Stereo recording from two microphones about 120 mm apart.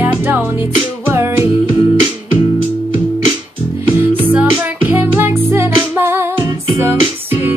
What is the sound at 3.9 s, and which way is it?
Music, 15° right (ahead or behind).